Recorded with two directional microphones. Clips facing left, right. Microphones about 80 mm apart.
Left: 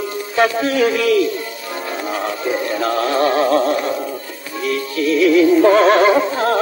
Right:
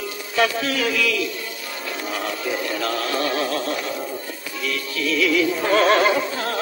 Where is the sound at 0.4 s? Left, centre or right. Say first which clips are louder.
Left 6 dB; left.